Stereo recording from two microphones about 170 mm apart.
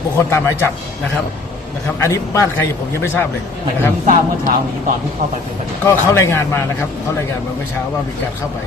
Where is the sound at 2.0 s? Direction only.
15° left (ahead or behind).